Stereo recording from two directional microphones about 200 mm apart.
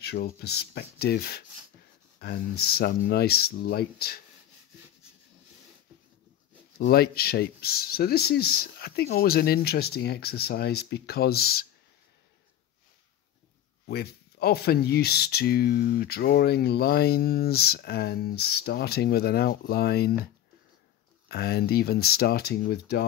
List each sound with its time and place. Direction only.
0.0 s speech: 50° left (ahead or behind)
6.8 s speech: 50° left (ahead or behind)
13.8 s speech: 50° left (ahead or behind)
21.3 s speech: 50° left (ahead or behind)